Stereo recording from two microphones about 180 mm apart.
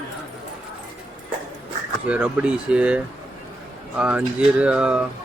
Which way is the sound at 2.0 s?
5° right (ahead or behind).